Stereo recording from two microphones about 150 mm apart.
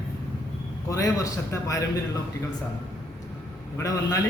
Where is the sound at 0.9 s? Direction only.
25° left (ahead or behind).